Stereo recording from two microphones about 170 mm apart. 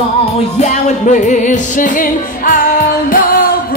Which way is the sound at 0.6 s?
45° left (ahead or behind).